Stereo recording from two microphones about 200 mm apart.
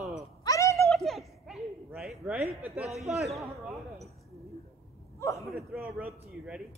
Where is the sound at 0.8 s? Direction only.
Centre (ahead or behind).